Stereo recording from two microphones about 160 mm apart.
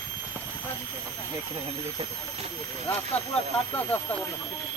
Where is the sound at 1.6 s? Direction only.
40° right (ahead or behind).